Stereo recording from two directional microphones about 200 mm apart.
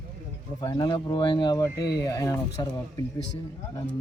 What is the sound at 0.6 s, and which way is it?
Speech, 20° left (ahead or behind).